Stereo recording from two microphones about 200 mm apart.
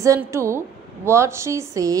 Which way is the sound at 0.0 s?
15° right (ahead or behind).